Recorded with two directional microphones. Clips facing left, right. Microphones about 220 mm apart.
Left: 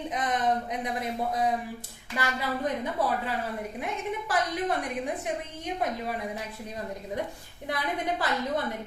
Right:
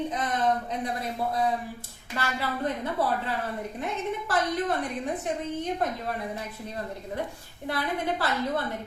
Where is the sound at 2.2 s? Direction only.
15° left (ahead or behind).